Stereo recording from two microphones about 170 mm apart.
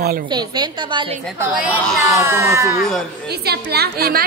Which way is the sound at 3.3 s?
70° right (ahead or behind).